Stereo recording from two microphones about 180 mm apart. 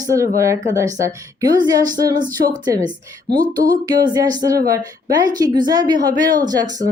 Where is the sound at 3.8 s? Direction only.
20° right (ahead or behind).